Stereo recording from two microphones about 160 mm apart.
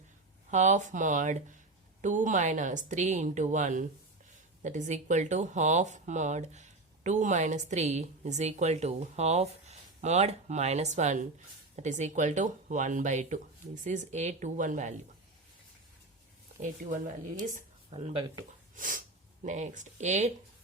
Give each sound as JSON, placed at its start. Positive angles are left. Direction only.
{"t": 0.5, "sound": "speech", "side_deg": -50}
{"t": 16.6, "sound": "speech", "side_deg": -55}
{"t": 17.9, "sound": "speech", "side_deg": -35}
{"t": 18.8, "sound": "speech", "side_deg": -55}